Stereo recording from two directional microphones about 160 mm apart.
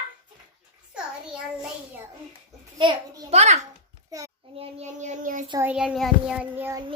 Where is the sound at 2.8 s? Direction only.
35° right (ahead or behind).